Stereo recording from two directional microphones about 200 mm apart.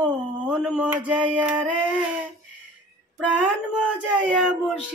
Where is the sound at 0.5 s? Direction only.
5° right (ahead or behind).